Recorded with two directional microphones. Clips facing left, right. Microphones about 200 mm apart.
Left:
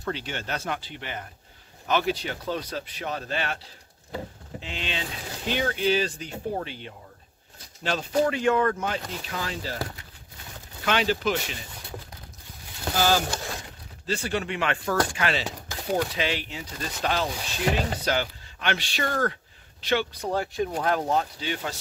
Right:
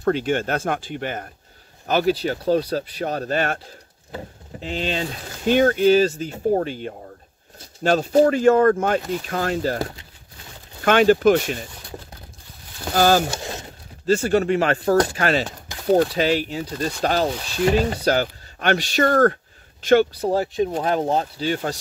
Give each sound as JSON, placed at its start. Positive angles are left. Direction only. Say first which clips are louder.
{"t": 0.0, "sound": "speech", "louder": "right 12 dB", "side_deg": -50}
{"t": 12.9, "sound": "speech", "louder": "right 7 dB", "side_deg": -50}
{"t": 13.4, "sound": "a sound", "louder": "right 4 dB", "side_deg": -25}
{"t": 14.0, "sound": "speech", "louder": "right 10 dB", "side_deg": -45}